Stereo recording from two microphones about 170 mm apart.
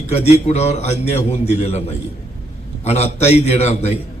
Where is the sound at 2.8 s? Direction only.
40° left (ahead or behind).